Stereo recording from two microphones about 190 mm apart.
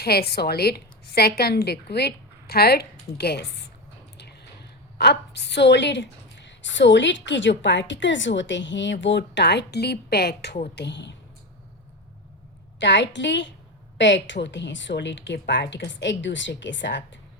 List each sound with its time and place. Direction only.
0.0 s a woman's voice: 55° left (ahead or behind)
4.9 s a woman's voice: 60° left (ahead or behind)
12.8 s a woman's voice: 70° left (ahead or behind)